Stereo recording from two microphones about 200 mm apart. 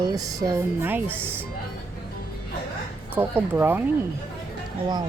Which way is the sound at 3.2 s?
10° right (ahead or behind).